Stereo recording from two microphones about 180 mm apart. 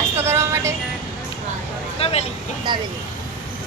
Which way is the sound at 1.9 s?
35° left (ahead or behind).